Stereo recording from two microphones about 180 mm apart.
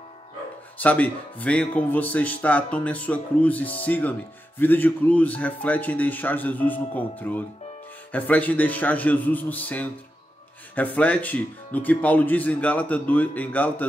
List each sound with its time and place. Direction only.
0.7 s speech: 10° left (ahead or behind)